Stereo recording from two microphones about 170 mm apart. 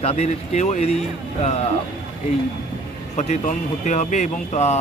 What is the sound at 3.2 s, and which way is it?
Speech, 45° left (ahead or behind).